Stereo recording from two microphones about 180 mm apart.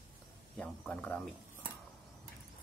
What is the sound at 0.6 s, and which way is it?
Speech, 10° left (ahead or behind).